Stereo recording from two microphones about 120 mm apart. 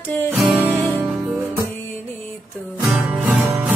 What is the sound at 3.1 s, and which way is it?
Music, 15° right (ahead or behind).